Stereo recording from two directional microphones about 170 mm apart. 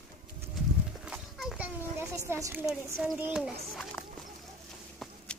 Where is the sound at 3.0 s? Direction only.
5° right (ahead or behind).